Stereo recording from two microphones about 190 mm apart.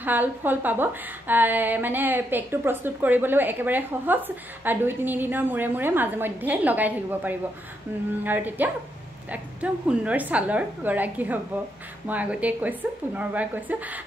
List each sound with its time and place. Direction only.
0.0 s a woman's voice: 10° right (ahead or behind)